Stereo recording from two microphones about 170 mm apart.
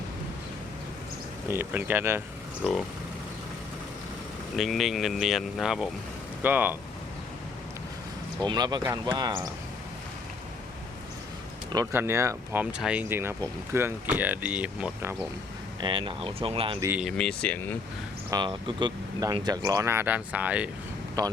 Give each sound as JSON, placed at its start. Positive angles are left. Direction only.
{"t": 1.5, "sound": "speech", "side_deg": -10}
{"t": 2.6, "sound": "speech", "side_deg": 0}
{"t": 4.5, "sound": "speech", "side_deg": 0}
{"t": 8.4, "sound": "speech", "side_deg": -25}
{"t": 11.7, "sound": "speech", "side_deg": -20}
{"t": 15.8, "sound": "speech", "side_deg": -30}
{"t": 17.0, "sound": "speech", "side_deg": 5}
{"t": 18.3, "sound": "speech", "side_deg": -25}
{"t": 21.2, "sound": "speech", "side_deg": -20}